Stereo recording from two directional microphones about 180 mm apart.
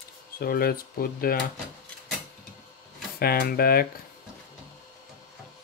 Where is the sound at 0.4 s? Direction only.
55° left (ahead or behind).